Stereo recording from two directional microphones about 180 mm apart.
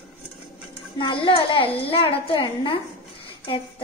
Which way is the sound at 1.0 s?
25° left (ahead or behind).